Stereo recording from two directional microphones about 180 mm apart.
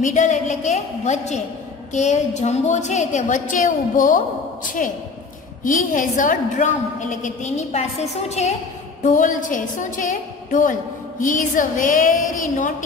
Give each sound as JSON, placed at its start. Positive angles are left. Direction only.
{"t": 0.0, "sound": "a woman's voice", "side_deg": 40}